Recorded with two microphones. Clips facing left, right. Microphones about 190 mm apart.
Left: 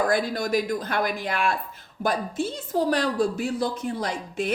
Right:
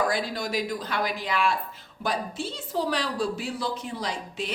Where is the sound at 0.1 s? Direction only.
50° left (ahead or behind).